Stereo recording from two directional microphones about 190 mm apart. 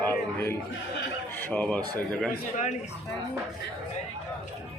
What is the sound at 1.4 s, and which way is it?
Speech, 10° left (ahead or behind).